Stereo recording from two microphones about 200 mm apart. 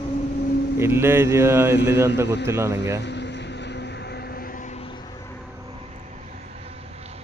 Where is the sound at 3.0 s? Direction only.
60° left (ahead or behind); by 4.9 s 30° left (ahead or behind).